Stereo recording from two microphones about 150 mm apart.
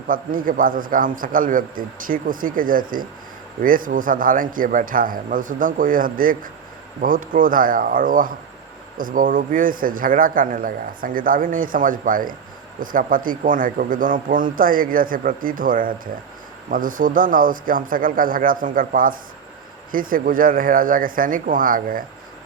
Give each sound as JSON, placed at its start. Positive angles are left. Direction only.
{"t": 0.1, "sound": "a man's voice", "side_deg": -70}